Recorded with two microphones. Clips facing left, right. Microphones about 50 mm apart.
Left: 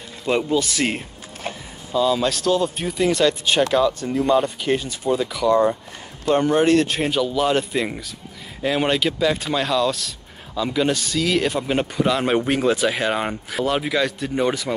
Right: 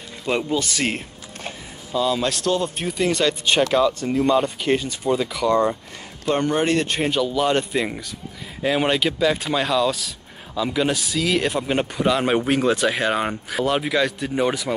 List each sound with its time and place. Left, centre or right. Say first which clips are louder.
0.2 s speech: left 2 dB; centre